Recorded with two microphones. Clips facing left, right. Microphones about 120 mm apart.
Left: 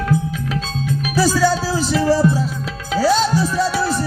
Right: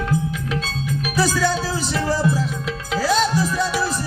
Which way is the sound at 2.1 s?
30° left (ahead or behind).